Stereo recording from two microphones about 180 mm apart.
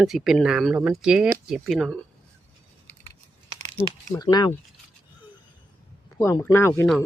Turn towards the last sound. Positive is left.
turn(degrees=15)  # may be behind; listen again after turning